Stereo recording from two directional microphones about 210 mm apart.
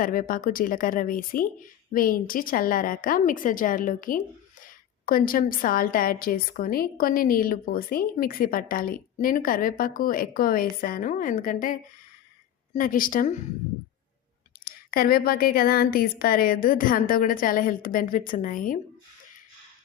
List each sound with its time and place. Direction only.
0.0 s a woman's voice: 40° left (ahead or behind)
14.6 s a woman's voice: 45° left (ahead or behind)